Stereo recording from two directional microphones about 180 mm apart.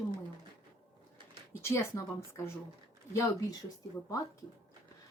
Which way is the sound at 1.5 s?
15° left (ahead or behind).